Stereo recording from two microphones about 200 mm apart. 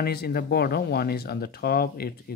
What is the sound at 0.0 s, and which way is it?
Speech, 50° left (ahead or behind).